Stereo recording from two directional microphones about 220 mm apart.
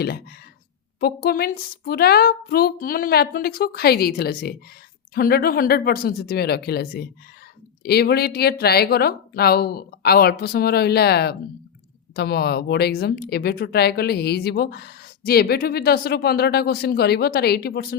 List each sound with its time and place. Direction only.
0.9 s speech: 45° left (ahead or behind)